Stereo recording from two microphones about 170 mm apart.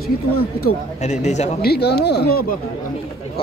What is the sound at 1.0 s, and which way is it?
Speech, 45° left (ahead or behind).